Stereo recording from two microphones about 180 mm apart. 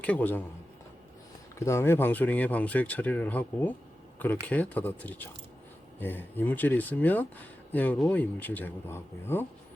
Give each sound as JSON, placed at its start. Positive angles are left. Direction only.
{"t": 0.0, "sound": "speech", "side_deg": 10}
{"t": 1.5, "sound": "speech", "side_deg": 15}